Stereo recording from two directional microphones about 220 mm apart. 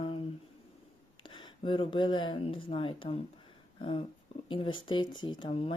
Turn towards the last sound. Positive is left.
turn(degrees=25)  # may be behind; listen again after turning